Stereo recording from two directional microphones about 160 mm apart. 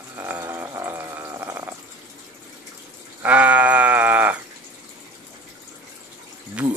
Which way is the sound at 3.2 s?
10° right (ahead or behind).